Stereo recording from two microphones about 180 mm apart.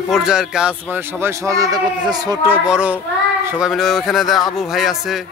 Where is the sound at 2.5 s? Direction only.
5° right (ahead or behind).